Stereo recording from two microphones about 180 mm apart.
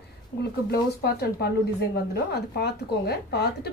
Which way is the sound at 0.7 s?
60° left (ahead or behind).